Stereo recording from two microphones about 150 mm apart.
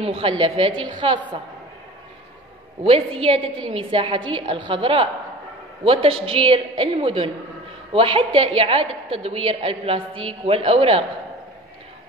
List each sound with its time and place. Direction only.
0.0 s a woman's voice: 40° right (ahead or behind)
2.9 s a woman's voice: 40° right (ahead or behind)